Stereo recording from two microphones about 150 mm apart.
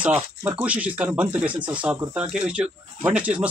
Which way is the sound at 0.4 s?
15° right (ahead or behind).